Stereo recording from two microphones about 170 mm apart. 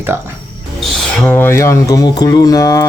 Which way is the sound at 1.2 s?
10° left (ahead or behind).